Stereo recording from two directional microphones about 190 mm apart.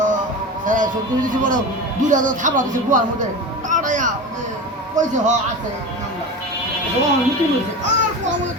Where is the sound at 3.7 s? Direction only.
40° right (ahead or behind).